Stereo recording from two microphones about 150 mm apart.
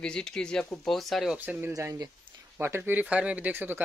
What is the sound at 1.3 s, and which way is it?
Speech, 10° right (ahead or behind).